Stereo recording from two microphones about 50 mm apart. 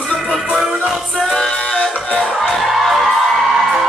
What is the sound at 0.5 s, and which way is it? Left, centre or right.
Music, centre.